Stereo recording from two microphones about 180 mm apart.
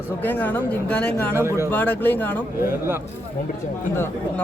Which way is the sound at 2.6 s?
15° right (ahead or behind).